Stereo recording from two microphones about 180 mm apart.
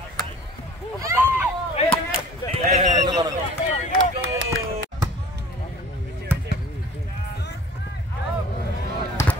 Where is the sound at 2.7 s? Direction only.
45° right (ahead or behind).